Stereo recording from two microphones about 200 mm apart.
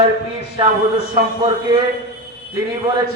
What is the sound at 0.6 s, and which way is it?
Speech, 25° right (ahead or behind).